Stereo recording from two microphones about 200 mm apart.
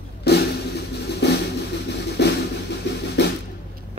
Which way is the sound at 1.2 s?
55° left (ahead or behind).